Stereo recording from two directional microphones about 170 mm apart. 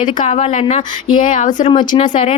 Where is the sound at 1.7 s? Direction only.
30° left (ahead or behind).